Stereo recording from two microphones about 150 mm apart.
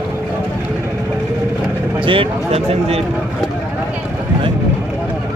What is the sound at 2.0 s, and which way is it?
Speech, 35° right (ahead or behind).